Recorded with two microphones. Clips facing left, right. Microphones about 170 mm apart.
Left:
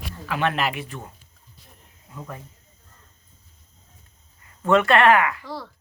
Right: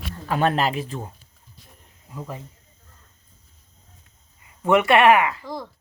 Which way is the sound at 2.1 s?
20° right (ahead or behind).